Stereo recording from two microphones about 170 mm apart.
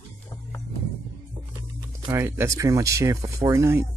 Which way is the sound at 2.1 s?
15° right (ahead or behind).